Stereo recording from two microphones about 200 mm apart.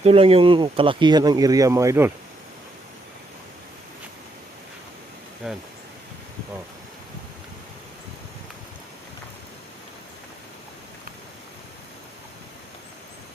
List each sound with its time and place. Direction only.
0.0 s speech: 30° right (ahead or behind); by 2.1 s 15° right (ahead or behind)
5.4 s speech: 5° right (ahead or behind)